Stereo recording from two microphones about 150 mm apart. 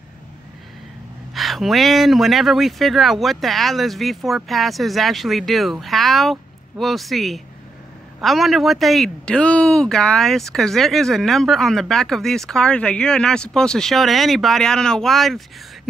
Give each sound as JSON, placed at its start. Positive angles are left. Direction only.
{"t": 1.3, "sound": "speech", "side_deg": 0}